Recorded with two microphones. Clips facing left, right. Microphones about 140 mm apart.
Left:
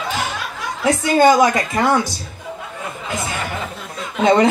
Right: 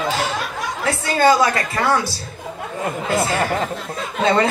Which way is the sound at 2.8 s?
65° right (ahead or behind).